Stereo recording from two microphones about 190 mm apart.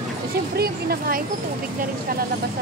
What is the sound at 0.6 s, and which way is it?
Speech, 50° right (ahead or behind).